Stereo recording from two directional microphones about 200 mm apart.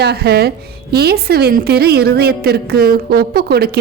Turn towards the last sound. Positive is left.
turn(degrees=-50)  # may be behind; listen again after turning